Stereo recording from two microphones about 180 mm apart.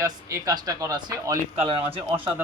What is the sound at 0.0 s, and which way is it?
Speech, 20° right (ahead or behind).